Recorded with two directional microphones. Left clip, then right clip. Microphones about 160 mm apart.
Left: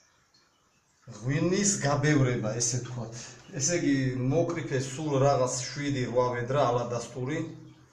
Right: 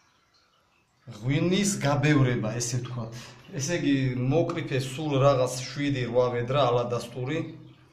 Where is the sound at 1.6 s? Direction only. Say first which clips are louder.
Even; 30° right (ahead or behind).